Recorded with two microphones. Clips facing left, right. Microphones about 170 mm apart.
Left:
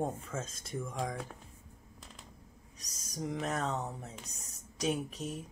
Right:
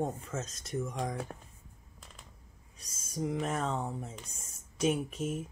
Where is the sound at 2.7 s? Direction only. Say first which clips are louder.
Even; 40° left (ahead or behind).